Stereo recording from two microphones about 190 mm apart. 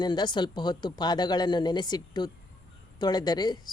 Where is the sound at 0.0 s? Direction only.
25° left (ahead or behind).